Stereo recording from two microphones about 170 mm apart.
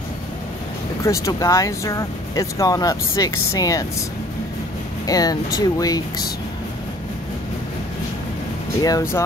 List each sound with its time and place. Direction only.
1.0 s speech: 20° left (ahead or behind)
5.0 s speech: 20° left (ahead or behind)
8.8 s speech: 20° left (ahead or behind)